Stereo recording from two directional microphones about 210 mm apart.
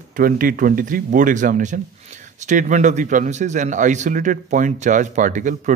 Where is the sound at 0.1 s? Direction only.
45° right (ahead or behind).